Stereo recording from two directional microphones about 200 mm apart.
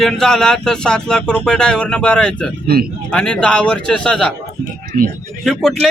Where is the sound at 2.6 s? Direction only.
50° right (ahead or behind).